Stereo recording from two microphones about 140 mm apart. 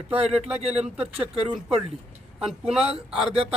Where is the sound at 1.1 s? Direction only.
45° right (ahead or behind).